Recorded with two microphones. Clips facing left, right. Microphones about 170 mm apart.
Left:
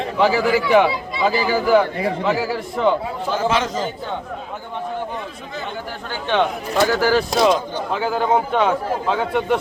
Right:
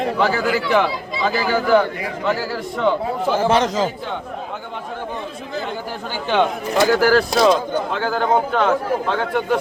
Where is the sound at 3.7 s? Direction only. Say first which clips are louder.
Right 4 dB; 90° right.